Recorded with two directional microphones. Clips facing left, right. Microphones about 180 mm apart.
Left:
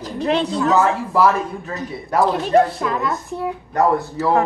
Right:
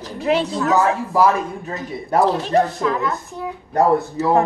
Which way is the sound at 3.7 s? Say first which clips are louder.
Right 2 dB; 30° right (ahead or behind).